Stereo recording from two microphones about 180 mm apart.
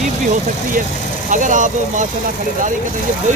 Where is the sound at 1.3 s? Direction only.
45° right (ahead or behind).